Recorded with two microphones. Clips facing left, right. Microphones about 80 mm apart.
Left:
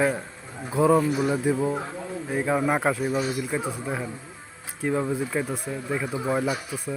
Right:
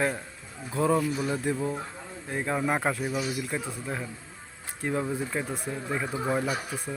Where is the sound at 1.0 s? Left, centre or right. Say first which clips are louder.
Left 5 dB; left.